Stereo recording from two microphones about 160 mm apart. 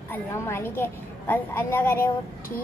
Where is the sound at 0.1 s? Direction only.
15° left (ahead or behind).